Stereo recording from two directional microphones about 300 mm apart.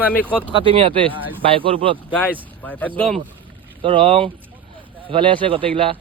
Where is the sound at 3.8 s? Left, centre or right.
Centre.